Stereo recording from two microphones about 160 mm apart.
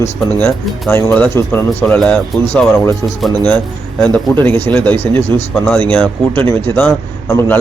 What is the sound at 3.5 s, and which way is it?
A man's voice, 10° left (ahead or behind).